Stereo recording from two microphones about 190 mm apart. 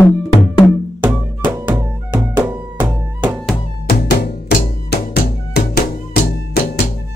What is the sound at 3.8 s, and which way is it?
Music, 55° left (ahead or behind).